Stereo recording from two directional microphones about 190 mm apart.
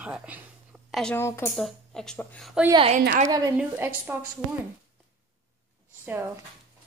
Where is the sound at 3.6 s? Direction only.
10° right (ahead or behind).